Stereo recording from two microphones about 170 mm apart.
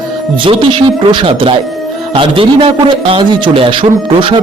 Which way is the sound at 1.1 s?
30° right (ahead or behind).